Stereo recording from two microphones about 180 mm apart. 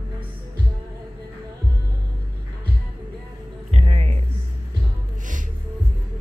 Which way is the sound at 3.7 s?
35° right (ahead or behind).